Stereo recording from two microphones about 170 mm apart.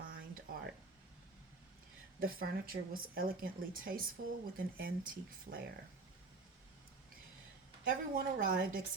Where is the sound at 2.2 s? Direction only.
55° right (ahead or behind).